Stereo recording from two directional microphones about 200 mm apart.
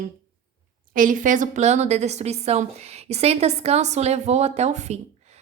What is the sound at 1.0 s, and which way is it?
A woman's voice, 40° right (ahead or behind).